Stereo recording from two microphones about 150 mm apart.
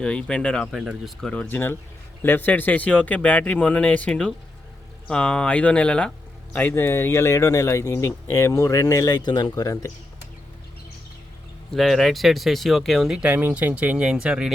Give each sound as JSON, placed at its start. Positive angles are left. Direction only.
{"t": 0.0, "sound": "speech", "side_deg": 5}
{"t": 1.3, "sound": "speech", "side_deg": 10}
{"t": 11.7, "sound": "speech", "side_deg": 0}